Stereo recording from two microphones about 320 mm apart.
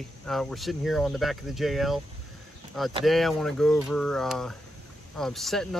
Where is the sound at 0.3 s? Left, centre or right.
Centre.